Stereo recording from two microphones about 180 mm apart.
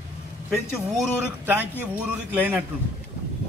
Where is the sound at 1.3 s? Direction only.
10° right (ahead or behind).